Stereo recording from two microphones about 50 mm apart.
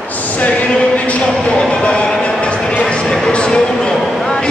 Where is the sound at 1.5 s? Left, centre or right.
Centre.